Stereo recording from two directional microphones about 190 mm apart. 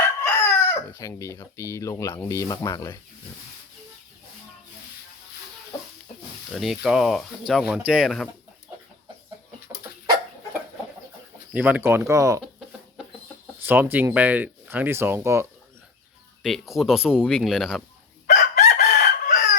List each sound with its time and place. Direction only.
0.0 s chicken: 15° left (ahead or behind)
5.7 s chicken: 20° left (ahead or behind)
6.5 s speech: centre (ahead or behind)
11.5 s speech: 10° right (ahead or behind)
13.7 s speech: 10° right (ahead or behind)
16.4 s speech: centre (ahead or behind)
18.3 s chicken: 45° left (ahead or behind)